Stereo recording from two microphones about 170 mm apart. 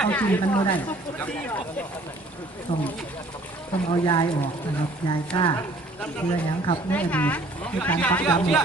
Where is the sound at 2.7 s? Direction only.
30° left (ahead or behind).